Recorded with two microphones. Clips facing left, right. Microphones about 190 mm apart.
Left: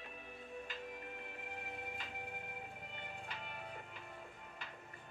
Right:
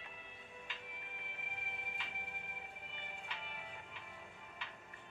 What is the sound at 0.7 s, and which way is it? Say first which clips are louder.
Music: left 7 dB; 45° left (ahead or behind).